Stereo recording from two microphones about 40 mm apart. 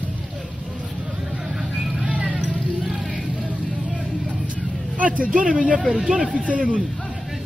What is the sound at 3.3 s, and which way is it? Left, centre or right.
Vehicle, right.